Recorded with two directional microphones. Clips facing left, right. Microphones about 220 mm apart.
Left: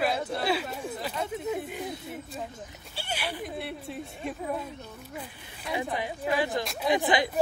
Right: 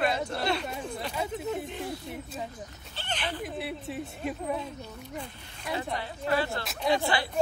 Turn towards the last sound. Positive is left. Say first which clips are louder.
# left 2 dB
turn(degrees=15)  # may be behind; listen again after turning